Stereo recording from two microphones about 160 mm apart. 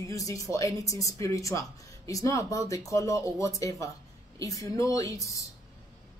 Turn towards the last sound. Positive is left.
turn(degrees=20)  # may be behind; listen again after turning